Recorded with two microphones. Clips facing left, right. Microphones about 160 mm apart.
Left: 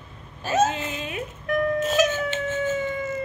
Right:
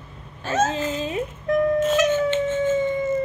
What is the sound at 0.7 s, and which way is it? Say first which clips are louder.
Speech: right 5 dB; 30° right (ahead or behind).